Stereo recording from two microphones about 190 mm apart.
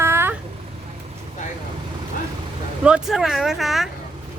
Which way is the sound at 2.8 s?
5° right (ahead or behind).